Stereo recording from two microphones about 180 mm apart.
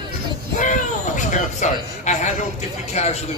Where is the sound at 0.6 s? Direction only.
45° left (ahead or behind).